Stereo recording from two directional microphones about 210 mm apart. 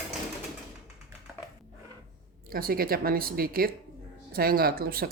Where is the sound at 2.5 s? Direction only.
45° right (ahead or behind).